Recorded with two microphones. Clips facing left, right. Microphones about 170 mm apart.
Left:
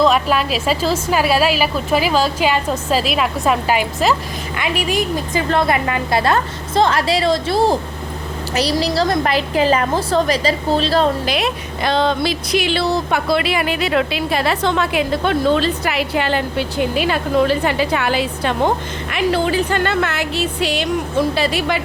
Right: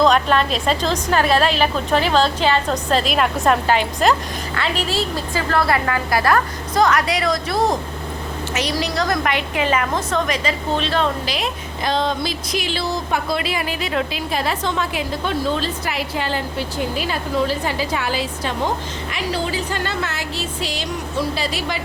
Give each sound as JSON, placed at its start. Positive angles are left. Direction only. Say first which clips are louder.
{"t": 0.0, "sound": "a woman's voice", "louder": "left 1 dB", "side_deg": 5}
{"t": 11.3, "sound": "speech", "louder": "left 5 dB", "side_deg": 70}